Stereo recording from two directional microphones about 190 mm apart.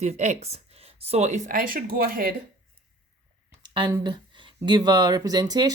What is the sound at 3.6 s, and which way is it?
Speech, 25° right (ahead or behind).